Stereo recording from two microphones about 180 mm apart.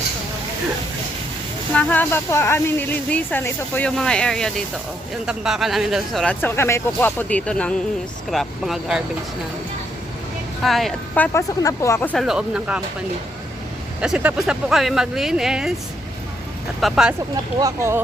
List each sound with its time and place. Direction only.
1.7 s speech: 10° left (ahead or behind)
10.6 s speech: centre (ahead or behind)
12.2 s speech: 5° right (ahead or behind)
14.0 s speech: 5° right (ahead or behind)
16.8 s speech: 5° right (ahead or behind)
17.6 s speech: 15° right (ahead or behind)